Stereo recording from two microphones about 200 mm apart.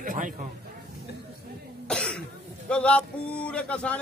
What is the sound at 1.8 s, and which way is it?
Cough, 5° left (ahead or behind).